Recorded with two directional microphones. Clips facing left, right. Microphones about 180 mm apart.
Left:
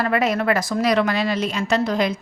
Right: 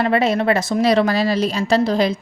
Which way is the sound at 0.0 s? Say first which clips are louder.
Right 3 dB; 30° right (ahead or behind).